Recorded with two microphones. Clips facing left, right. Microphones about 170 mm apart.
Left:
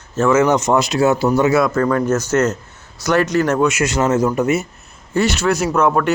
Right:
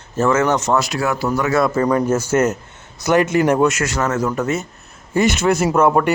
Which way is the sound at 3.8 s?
20° left (ahead or behind).